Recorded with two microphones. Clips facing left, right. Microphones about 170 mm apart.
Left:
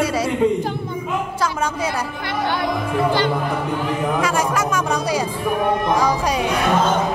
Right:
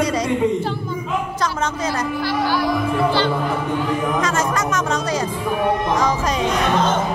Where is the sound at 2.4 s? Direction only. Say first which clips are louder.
Even; 20° left (ahead or behind).